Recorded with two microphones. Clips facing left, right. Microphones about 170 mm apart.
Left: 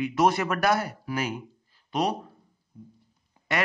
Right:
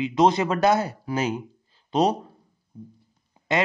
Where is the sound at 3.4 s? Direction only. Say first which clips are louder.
Right 3 dB; 20° right (ahead or behind).